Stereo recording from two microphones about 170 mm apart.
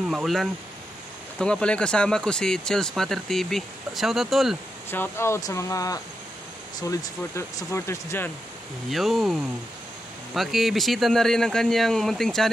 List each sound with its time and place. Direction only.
0.1 s speech: centre (ahead or behind)
4.9 s speech: 15° left (ahead or behind)
8.9 s speech: centre (ahead or behind)